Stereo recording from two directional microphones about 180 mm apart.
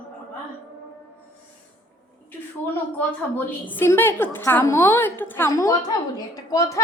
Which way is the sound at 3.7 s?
10° left (ahead or behind).